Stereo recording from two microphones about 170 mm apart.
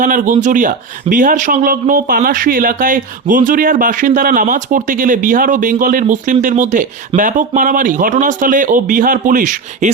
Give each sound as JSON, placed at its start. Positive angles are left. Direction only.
{"t": 0.0, "sound": "speech", "side_deg": -50}